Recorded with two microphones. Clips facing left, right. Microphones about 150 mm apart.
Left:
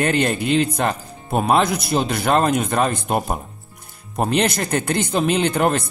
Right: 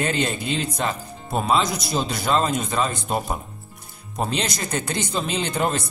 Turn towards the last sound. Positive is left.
turn(degrees=55)  # may be behind; listen again after turning